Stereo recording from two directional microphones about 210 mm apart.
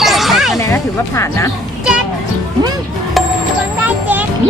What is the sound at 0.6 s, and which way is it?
Speech, 15° left (ahead or behind).